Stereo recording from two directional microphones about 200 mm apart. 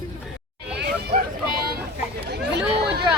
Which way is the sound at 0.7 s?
55° right (ahead or behind).